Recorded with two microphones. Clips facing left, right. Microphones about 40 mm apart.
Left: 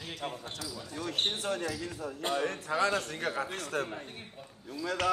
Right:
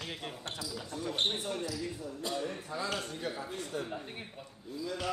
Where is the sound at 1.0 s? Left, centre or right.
Left.